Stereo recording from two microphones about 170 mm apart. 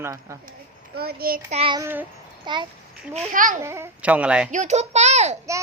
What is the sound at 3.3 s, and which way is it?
Speech, 50° right (ahead or behind).